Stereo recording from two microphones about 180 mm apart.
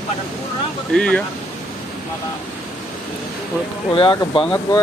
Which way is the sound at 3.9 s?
25° left (ahead or behind).